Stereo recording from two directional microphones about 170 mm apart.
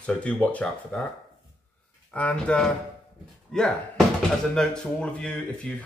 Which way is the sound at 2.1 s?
5° left (ahead or behind).